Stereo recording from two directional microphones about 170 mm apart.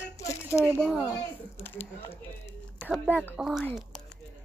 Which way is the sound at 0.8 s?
5° left (ahead or behind).